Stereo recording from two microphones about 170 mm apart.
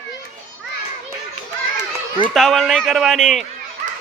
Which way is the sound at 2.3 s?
Centre (ahead or behind).